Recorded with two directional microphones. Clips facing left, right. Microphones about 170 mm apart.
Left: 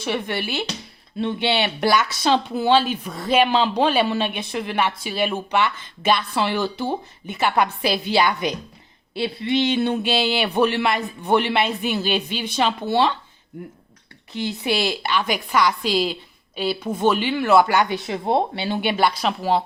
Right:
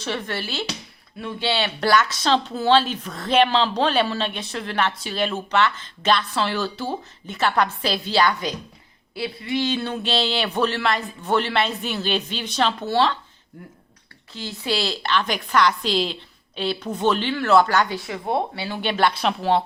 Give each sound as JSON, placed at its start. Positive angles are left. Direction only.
{"t": 0.0, "sound": "a woman's voice", "side_deg": 15}
{"t": 14.3, "sound": "a woman's voice", "side_deg": 15}
{"t": 18.8, "sound": "a woman's voice", "side_deg": 10}